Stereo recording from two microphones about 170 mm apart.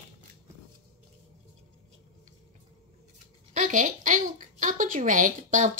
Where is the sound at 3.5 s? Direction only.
50° right (ahead or behind).